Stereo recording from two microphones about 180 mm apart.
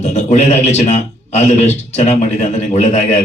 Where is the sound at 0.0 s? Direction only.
40° left (ahead or behind).